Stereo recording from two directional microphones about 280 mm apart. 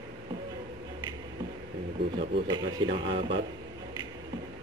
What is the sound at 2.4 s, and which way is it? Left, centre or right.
Speech, centre.